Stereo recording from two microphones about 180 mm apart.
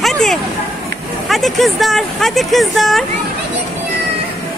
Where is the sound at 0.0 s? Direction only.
Centre (ahead or behind).